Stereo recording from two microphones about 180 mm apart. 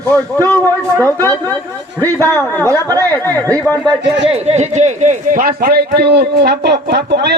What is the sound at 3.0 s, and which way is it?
Speech, 15° left (ahead or behind).